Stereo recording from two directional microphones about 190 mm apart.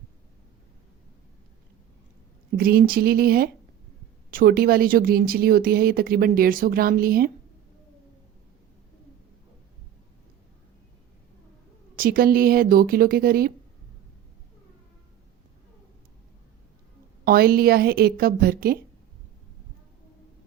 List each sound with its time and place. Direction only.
2.6 s speech: 50° right (ahead or behind)
11.9 s speech: 50° right (ahead or behind)
17.2 s speech: 50° right (ahead or behind)